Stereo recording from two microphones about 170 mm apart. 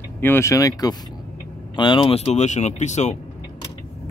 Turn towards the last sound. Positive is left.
turn(degrees=45)  # may be behind; listen again after turning